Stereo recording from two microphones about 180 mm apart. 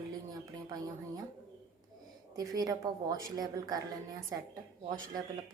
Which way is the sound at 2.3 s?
20° right (ahead or behind).